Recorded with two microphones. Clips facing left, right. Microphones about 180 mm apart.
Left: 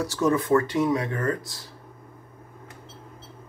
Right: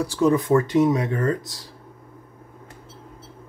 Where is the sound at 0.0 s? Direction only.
15° right (ahead or behind).